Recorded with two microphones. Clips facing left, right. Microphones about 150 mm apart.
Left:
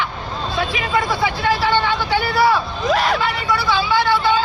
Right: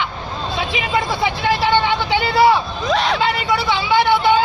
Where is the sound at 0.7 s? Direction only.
20° right (ahead or behind).